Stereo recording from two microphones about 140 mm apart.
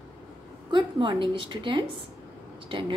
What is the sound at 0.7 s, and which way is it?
A woman's voice, 35° right (ahead or behind).